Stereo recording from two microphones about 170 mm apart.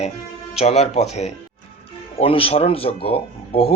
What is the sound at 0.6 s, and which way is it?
Speech, 40° left (ahead or behind).